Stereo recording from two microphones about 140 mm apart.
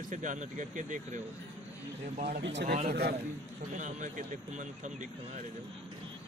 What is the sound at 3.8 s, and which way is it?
A man's voice, 60° right (ahead or behind).